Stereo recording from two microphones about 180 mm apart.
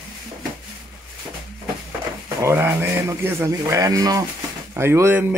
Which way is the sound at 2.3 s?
15° right (ahead or behind).